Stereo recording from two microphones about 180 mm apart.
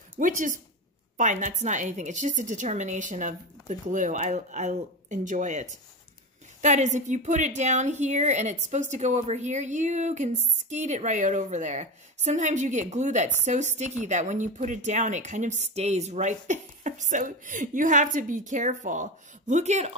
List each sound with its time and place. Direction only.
0.2 s a woman's voice: 45° right (ahead or behind)